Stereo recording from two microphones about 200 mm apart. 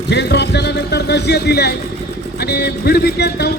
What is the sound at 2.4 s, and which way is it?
Music, 55° left (ahead or behind).